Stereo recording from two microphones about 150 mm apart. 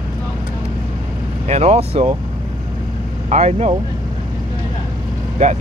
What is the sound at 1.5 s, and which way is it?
Speech, 45° right (ahead or behind).